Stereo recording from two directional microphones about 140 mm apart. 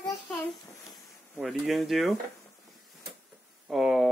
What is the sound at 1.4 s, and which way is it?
Speech, centre (ahead or behind).